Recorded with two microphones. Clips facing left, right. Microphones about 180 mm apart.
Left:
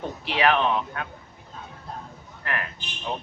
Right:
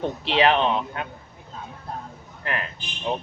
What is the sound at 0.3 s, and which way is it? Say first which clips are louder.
Speech: right 2 dB; 25° right (ahead or behind).